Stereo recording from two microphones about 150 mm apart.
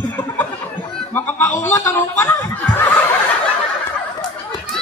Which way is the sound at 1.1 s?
15° left (ahead or behind).